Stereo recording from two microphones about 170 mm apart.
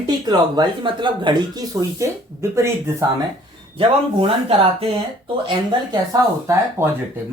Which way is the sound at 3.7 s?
30° right (ahead or behind).